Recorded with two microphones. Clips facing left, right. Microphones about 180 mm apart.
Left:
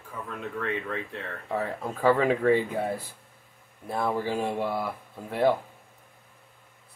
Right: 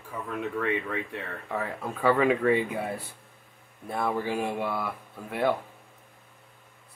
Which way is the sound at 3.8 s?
30° left (ahead or behind).